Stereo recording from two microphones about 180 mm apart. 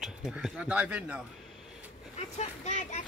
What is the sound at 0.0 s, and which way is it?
Speech, centre (ahead or behind).